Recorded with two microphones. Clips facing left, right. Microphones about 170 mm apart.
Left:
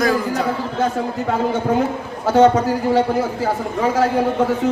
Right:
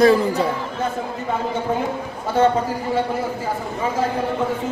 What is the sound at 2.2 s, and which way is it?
Speech, 90° left.